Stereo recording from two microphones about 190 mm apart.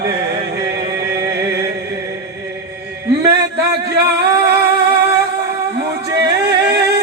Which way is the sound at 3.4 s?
60° right (ahead or behind).